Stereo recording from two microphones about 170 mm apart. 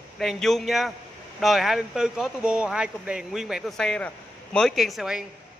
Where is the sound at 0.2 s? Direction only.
Centre (ahead or behind).